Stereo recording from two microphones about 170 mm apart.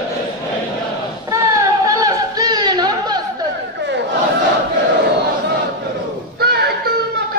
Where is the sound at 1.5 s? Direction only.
20° right (ahead or behind).